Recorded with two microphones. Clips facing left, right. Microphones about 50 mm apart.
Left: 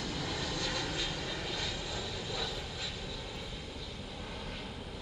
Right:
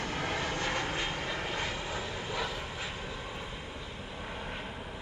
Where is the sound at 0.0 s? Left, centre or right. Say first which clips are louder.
Right 4 dB; right.